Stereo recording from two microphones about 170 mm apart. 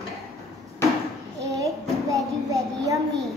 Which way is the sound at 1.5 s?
20° right (ahead or behind).